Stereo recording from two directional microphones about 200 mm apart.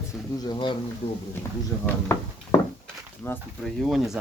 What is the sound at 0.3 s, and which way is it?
Speech, 20° left (ahead or behind).